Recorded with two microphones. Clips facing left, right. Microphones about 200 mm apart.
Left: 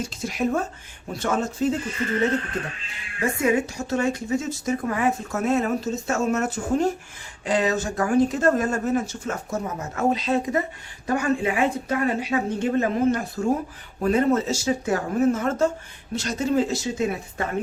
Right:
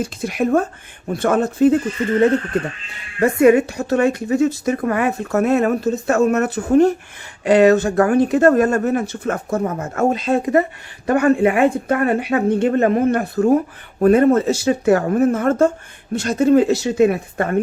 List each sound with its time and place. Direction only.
0.0 s speech: 60° right (ahead or behind)
3.2 s speech: 60° right (ahead or behind)